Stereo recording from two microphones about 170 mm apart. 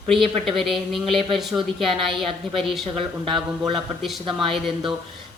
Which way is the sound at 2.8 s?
30° right (ahead or behind).